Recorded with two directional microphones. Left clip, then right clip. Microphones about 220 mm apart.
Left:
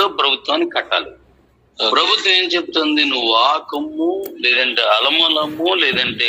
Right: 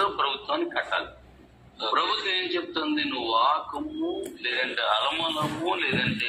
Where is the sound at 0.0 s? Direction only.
60° left (ahead or behind).